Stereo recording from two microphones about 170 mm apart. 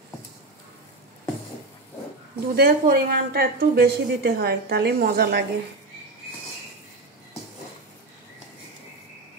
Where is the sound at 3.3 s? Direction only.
65° right (ahead or behind).